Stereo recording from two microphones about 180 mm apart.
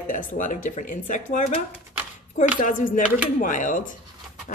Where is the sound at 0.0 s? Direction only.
45° left (ahead or behind).